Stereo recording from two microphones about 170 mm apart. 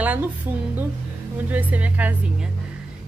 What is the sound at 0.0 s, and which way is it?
Speech, 10° right (ahead or behind).